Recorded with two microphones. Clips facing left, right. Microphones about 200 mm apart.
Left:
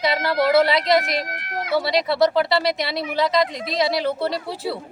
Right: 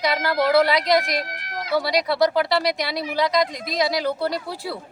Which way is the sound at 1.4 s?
55° left (ahead or behind).